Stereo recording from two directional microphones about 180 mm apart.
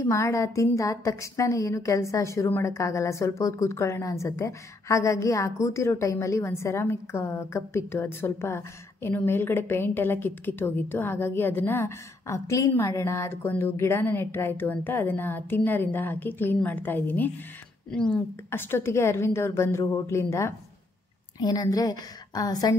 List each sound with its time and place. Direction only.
0.0 s a woman's voice: 15° left (ahead or behind)